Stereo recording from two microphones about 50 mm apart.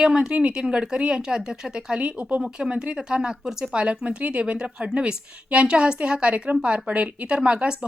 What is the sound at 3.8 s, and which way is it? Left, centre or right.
Speech, right.